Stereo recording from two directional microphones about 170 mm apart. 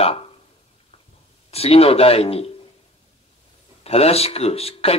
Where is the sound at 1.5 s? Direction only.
35° left (ahead or behind).